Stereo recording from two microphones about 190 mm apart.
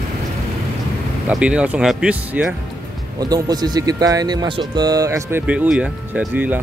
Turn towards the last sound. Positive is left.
turn(degrees=-10)  # may be behind; listen again after turning